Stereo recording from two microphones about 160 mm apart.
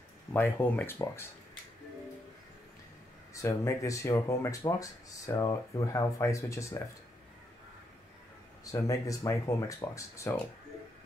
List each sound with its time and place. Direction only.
0.3 s speech: 10° left (ahead or behind)
3.3 s speech: 20° left (ahead or behind)
8.7 s speech: 20° left (ahead or behind)